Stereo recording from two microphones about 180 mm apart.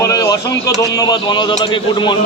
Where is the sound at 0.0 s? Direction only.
20° left (ahead or behind).